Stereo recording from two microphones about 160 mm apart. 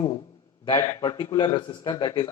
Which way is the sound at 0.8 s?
15° left (ahead or behind).